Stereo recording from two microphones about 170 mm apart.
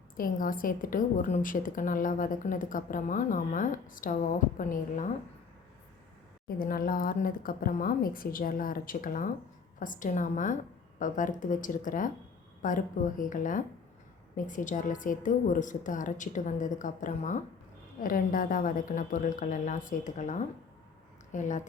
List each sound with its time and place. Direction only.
0.2 s a woman's voice: 55° left (ahead or behind)
6.6 s a woman's voice: 60° left (ahead or behind)